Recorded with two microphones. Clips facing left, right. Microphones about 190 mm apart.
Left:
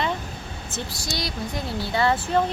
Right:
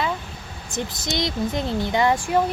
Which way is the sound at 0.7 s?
20° right (ahead or behind).